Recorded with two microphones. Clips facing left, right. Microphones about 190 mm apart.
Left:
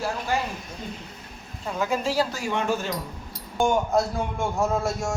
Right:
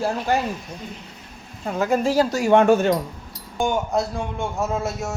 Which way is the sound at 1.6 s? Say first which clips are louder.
Right 5 dB; 50° right (ahead or behind).